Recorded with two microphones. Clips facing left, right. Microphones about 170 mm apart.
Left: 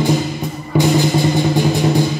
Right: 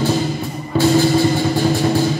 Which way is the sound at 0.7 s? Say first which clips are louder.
Right 1 dB; 15° left (ahead or behind).